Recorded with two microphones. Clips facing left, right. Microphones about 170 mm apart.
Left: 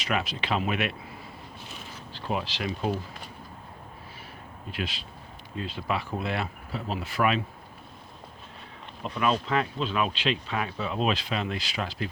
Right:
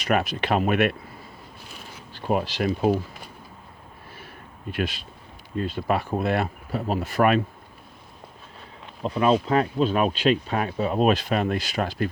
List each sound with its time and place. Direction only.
0.0 s speech: 50° right (ahead or behind)
2.1 s speech: 50° right (ahead or behind)
4.7 s speech: 50° right (ahead or behind)
9.0 s speech: 35° right (ahead or behind); by 12.0 s 50° right (ahead or behind)